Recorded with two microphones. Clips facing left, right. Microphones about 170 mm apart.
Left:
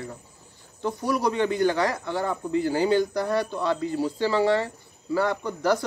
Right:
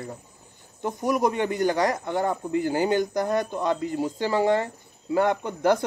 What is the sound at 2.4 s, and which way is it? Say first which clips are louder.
Speech: even; 50° right (ahead or behind).